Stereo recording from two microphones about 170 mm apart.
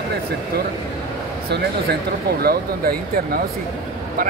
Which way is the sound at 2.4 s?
65° right (ahead or behind).